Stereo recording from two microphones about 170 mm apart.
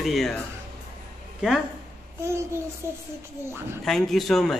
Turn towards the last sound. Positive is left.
turn(degrees=0)  # may be behind; listen again after turning